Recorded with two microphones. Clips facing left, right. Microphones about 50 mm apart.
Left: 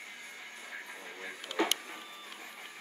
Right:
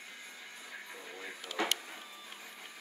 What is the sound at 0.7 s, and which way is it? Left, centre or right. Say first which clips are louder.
Music: left 2 dB; left.